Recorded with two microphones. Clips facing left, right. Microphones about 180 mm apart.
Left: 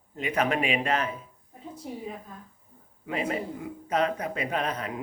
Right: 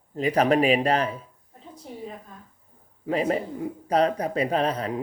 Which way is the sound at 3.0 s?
35° right (ahead or behind).